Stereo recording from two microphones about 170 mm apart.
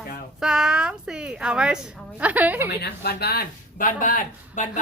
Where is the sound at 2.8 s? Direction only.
70° left (ahead or behind).